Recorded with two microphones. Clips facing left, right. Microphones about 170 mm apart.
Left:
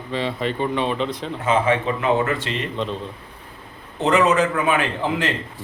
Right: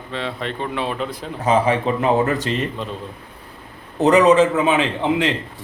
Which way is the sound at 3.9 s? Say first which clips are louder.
Right 5 dB; 40° right (ahead or behind).